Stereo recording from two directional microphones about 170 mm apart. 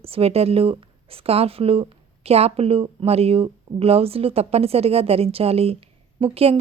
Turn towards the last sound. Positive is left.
turn(degrees=-35)  # may be behind; listen again after turning